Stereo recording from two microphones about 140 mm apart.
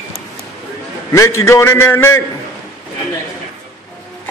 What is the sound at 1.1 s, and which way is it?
A man's voice, 20° left (ahead or behind).